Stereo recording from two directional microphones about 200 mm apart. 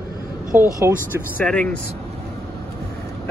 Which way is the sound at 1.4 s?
5° left (ahead or behind).